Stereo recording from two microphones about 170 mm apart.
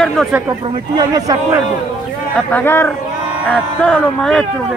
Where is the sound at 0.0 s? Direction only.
Centre (ahead or behind).